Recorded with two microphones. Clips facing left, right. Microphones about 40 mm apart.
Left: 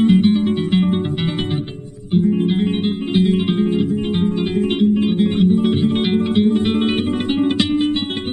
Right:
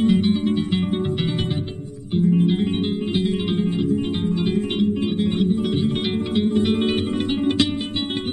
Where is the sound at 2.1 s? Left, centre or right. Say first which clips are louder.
Left 2 dB; left.